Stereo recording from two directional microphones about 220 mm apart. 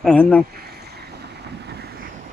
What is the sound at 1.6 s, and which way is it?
Vehicle, 45° right (ahead or behind).